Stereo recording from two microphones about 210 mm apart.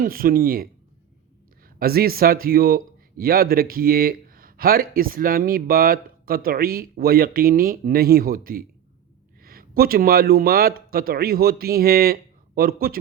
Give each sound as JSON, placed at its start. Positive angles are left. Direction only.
{"t": 0.0, "sound": "speech", "side_deg": -45}